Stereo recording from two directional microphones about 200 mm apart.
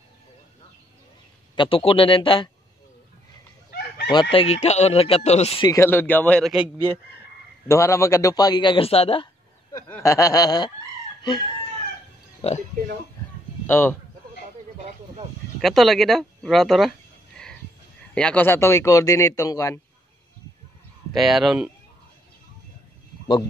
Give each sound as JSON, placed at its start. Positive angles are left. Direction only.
{"t": 1.5, "sound": "a man's voice", "side_deg": 25}
{"t": 4.1, "sound": "a man's voice", "side_deg": 25}
{"t": 5.7, "sound": "a man's voice", "side_deg": 10}
{"t": 7.6, "sound": "a man's voice", "side_deg": 15}
{"t": 9.7, "sound": "a man's voice", "side_deg": 15}
{"t": 12.4, "sound": "speech", "side_deg": 30}
{"t": 13.7, "sound": "speech", "side_deg": 10}
{"t": 15.6, "sound": "speech", "side_deg": 0}
{"t": 18.1, "sound": "a man's voice", "side_deg": 5}
{"t": 21.1, "sound": "speech", "side_deg": 0}
{"t": 23.2, "sound": "speech", "side_deg": 25}